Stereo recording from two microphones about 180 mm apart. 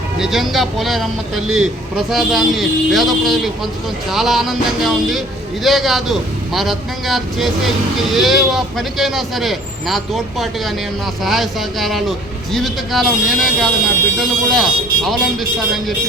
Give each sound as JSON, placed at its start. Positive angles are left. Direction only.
{"t": 0.2, "sound": "speech", "side_deg": 0}